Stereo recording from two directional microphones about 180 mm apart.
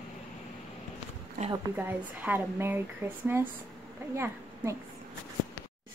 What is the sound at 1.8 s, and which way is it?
A woman's voice, 10° right (ahead or behind).